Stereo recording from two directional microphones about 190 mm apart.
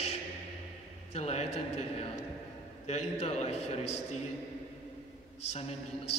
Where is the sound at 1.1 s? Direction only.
35° left (ahead or behind).